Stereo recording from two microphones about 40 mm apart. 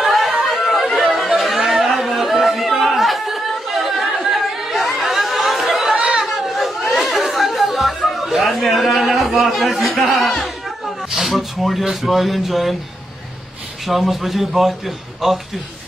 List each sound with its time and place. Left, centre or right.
0.0 s chatter: centre
5.9 s chatter: right
6.2 s chatter: centre
9.4 s speech: centre
11.1 s a sound: centre
11.8 s speech: centre
13.8 s speech: centre